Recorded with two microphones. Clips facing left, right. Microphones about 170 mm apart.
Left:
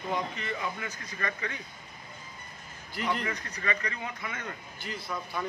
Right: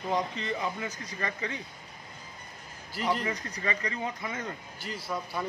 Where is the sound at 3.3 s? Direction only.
30° right (ahead or behind).